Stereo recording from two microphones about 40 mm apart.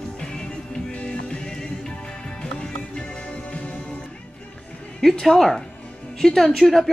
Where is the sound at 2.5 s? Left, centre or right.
Left.